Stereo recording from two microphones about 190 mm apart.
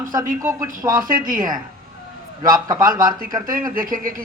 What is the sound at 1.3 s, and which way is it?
Speech, 45° right (ahead or behind).